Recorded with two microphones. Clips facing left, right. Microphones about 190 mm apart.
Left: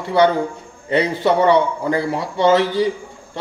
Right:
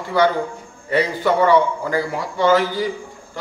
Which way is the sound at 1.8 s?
25° left (ahead or behind).